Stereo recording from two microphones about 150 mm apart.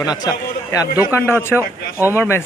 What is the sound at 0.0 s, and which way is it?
A man's voice, 25° left (ahead or behind).